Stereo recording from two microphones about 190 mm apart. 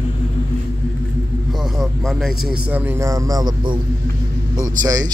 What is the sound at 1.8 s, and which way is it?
A man's voice, centre (ahead or behind).